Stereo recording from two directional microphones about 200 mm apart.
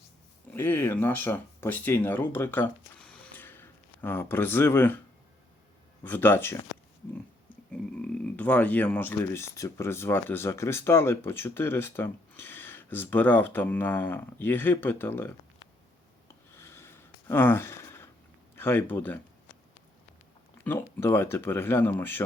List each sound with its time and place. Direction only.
0.5 s speech: 10° left (ahead or behind)
6.0 s speech: 10° left (ahead or behind)
7.7 s speech: 5° left (ahead or behind)
16.5 s a sound: 10° left (ahead or behind)
18.5 s speech: 10° left (ahead or behind)
20.7 s speech: 10° left (ahead or behind)